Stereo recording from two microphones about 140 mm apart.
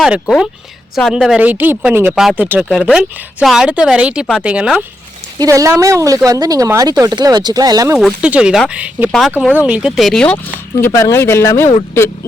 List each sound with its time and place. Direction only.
0.9 s speech: centre (ahead or behind)
5.4 s speech: 25° right (ahead or behind)
7.9 s speech: 5° right (ahead or behind); by 11.7 s 20° left (ahead or behind)